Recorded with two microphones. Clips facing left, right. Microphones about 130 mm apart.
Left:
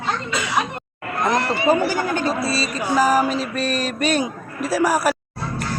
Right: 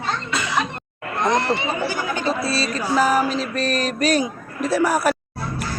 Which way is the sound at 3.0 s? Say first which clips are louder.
Left 1 dB; 5° left (ahead or behind).